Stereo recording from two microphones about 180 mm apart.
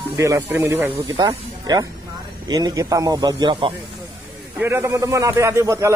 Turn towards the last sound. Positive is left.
turn(degrees=-15)  # may be behind; listen again after turning